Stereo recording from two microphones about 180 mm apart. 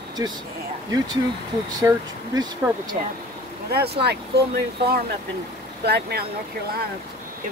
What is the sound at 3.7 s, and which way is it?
Speech, 65° right (ahead or behind).